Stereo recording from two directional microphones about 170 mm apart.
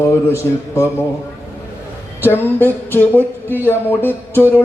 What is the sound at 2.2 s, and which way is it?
Music, 10° left (ahead or behind).